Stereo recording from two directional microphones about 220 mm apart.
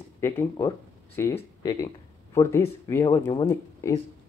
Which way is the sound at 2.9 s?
15° left (ahead or behind).